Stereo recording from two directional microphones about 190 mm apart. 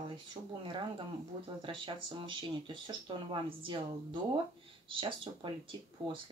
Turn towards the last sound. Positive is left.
turn(degrees=-25)  # may be behind; listen again after turning